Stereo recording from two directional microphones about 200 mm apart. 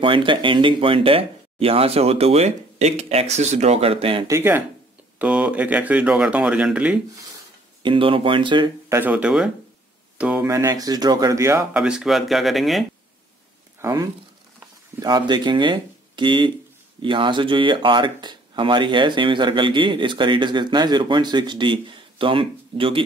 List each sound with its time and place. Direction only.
0.0 s speech: 25° right (ahead or behind)
4.3 s speech: 10° right (ahead or behind)
7.8 s speech: 25° right (ahead or behind)
8.9 s speech: 10° right (ahead or behind)
11.7 s speech: 5° right (ahead or behind)
13.7 s speech: 15° right (ahead or behind)